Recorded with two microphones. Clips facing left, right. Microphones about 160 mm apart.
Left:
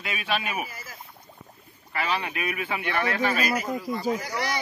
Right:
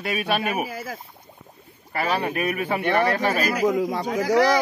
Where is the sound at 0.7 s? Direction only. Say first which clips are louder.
Right 11 dB; 70° right (ahead or behind).